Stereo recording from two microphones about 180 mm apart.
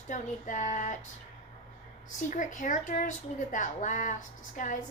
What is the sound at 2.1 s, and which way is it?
A woman's voice, 45° left (ahead or behind).